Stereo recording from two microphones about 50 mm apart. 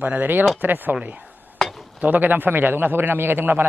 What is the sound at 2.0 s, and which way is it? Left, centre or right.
A man's voice, right.